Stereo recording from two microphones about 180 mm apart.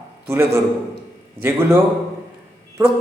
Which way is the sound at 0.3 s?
15° right (ahead or behind).